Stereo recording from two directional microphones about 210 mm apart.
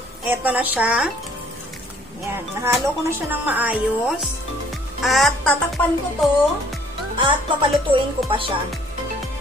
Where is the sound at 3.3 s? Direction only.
10° right (ahead or behind).